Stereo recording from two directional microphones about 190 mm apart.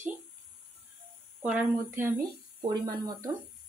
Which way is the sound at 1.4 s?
10° right (ahead or behind).